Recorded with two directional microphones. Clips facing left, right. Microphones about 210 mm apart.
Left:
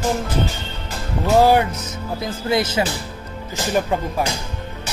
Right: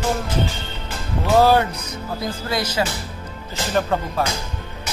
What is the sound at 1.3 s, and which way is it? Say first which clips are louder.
Speech: left 1 dB; 15° left (ahead or behind).